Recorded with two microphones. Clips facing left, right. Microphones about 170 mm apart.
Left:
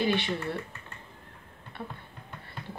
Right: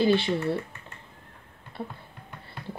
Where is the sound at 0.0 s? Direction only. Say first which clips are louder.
Right 5 dB; 30° right (ahead or behind).